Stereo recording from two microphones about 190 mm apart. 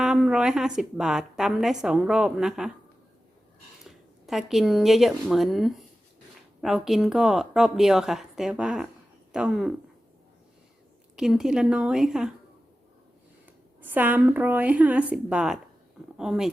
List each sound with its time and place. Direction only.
0.0 s a woman's voice: 5° right (ahead or behind)
3.8 s a woman's voice: centre (ahead or behind)
11.2 s a woman's voice: centre (ahead or behind)
13.8 s a woman's voice: 10° right (ahead or behind)